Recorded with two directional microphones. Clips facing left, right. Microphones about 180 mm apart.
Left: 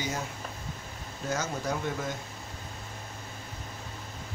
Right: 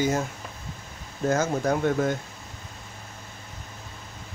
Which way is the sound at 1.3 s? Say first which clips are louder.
Right 8 dB; 50° right (ahead or behind).